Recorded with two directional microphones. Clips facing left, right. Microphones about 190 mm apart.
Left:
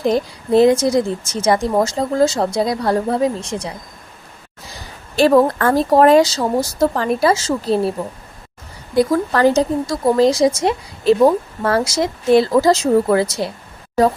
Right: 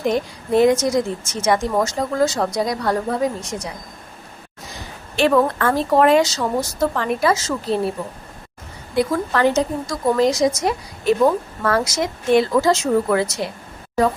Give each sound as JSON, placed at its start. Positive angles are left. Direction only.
{"t": 0.0, "sound": "a woman's voice", "side_deg": 30}
{"t": 5.1, "sound": "a woman's voice", "side_deg": 35}
{"t": 9.0, "sound": "a woman's voice", "side_deg": 40}